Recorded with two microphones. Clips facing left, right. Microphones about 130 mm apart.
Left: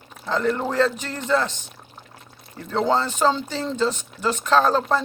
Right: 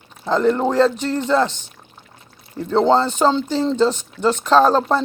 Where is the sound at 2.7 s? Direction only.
30° right (ahead or behind).